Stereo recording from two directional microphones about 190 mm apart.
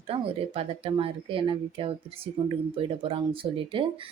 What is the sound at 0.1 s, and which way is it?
A woman's voice, 30° right (ahead or behind).